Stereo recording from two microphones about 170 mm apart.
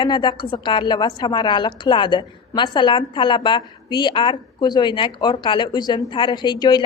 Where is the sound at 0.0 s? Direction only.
25° left (ahead or behind).